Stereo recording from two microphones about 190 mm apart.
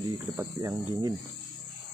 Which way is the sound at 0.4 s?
20° right (ahead or behind).